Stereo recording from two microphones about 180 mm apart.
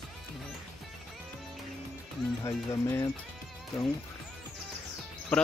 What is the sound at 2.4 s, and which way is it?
Speech, 15° left (ahead or behind).